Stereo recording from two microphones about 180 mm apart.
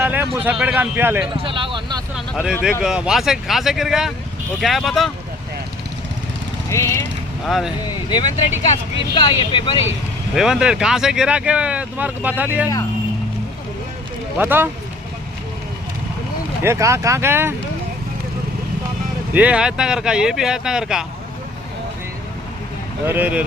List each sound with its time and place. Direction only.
0.0 s a sound: 10° right (ahead or behind)
0.3 s a man's voice: 10° right (ahead or behind)
1.4 s a sound: 30° right (ahead or behind)
2.1 s a sound: 5° right (ahead or behind)
2.8 s speech: 5° right (ahead or behind)
6.7 s speech: 15° left (ahead or behind)
7.4 s speech: centre (ahead or behind)
8.6 s speech: 30° left (ahead or behind)
10.3 s speech: 5° right (ahead or behind)
14.3 s a man's voice: 10° right (ahead or behind)
16.6 s a man's voice: 15° right (ahead or behind)
19.3 s speech: 5° right (ahead or behind)
23.0 s a man's voice: 10° right (ahead or behind)